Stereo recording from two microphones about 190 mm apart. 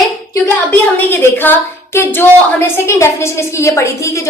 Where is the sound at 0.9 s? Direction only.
10° left (ahead or behind).